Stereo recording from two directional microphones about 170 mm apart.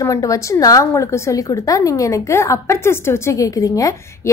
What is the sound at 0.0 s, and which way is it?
A woman's voice, 20° left (ahead or behind).